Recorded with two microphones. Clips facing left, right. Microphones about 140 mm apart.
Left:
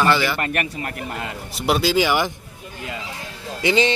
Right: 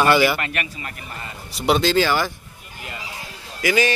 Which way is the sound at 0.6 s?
60° left (ahead or behind).